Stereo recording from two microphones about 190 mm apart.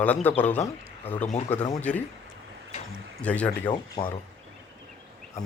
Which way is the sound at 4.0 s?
25° left (ahead or behind).